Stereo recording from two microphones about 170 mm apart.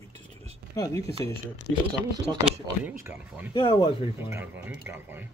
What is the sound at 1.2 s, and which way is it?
Speech, 20° left (ahead or behind).